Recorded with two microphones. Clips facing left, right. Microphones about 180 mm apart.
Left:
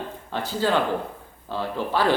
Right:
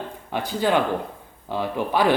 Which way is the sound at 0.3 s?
15° right (ahead or behind).